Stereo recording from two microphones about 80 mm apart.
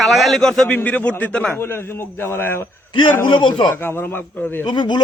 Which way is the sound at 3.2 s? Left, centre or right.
Left.